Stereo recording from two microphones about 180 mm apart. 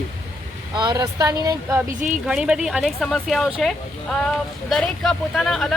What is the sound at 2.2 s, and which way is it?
Speech, 5° right (ahead or behind).